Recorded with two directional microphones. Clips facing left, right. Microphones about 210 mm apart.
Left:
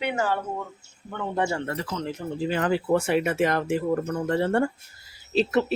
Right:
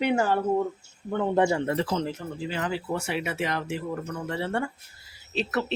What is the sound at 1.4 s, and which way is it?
Speech, 20° right (ahead or behind).